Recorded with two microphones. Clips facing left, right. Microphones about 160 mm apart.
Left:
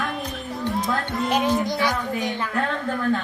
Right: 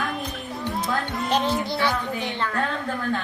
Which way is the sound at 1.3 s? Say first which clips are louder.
Left 1 dB; 15° left (ahead or behind).